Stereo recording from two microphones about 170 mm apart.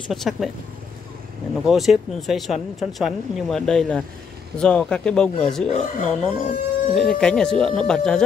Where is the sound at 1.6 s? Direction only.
Centre (ahead or behind).